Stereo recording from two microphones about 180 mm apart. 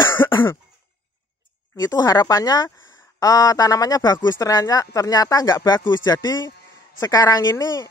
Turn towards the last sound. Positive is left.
turn(degrees=20)  # may be behind; listen again after turning